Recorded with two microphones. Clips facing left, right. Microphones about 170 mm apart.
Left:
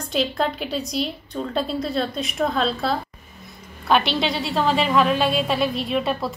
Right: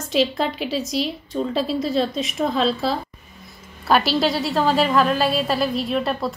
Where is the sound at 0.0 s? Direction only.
Centre (ahead or behind).